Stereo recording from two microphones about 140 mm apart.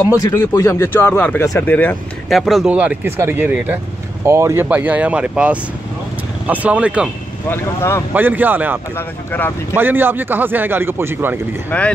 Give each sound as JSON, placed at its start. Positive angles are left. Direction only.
{"t": 0.1, "sound": "speech", "side_deg": 20}
{"t": 2.2, "sound": "speech", "side_deg": 0}
{"t": 7.4, "sound": "speech", "side_deg": 15}
{"t": 8.1, "sound": "speech", "side_deg": -10}
{"t": 8.9, "sound": "speech", "side_deg": 15}
{"t": 9.8, "sound": "speech", "side_deg": -15}
{"t": 11.7, "sound": "speech", "side_deg": 10}